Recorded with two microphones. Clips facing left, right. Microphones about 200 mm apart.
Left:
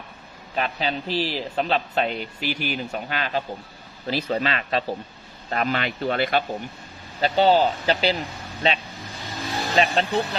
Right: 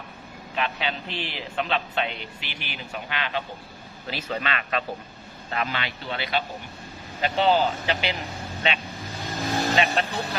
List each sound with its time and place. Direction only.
0.5 s a man's voice: 40° left (ahead or behind)
5.5 s speech: 45° left (ahead or behind)
7.2 s a man's voice: 35° left (ahead or behind)
9.2 s vehicle: 45° right (ahead or behind)
9.7 s a man's voice: 35° left (ahead or behind)